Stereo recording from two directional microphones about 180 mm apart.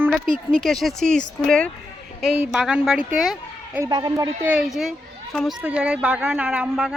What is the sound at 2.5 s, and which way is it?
Speech, 5° right (ahead or behind).